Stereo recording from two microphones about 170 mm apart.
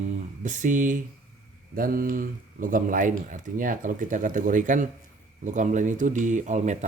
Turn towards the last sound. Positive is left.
turn(degrees=-45)  # may be behind; listen again after turning